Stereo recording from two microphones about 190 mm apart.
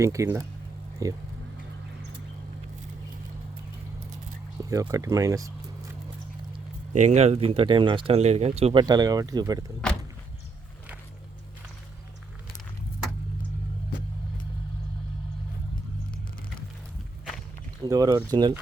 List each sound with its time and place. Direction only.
0.0 s speech: 15° right (ahead or behind)
4.7 s speech: 20° right (ahead or behind)
6.9 s speech: 40° right (ahead or behind); by 9.6 s 20° right (ahead or behind)
17.8 s speech: 20° right (ahead or behind)